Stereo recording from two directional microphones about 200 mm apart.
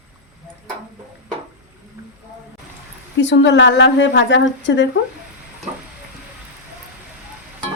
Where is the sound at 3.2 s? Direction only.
65° left (ahead or behind).